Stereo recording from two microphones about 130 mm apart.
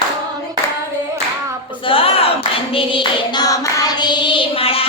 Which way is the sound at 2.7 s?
40° left (ahead or behind).